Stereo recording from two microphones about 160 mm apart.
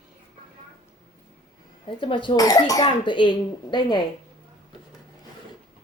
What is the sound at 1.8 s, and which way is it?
Speech, 30° left (ahead or behind).